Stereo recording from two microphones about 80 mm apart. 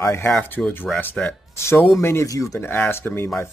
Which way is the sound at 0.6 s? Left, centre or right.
Centre.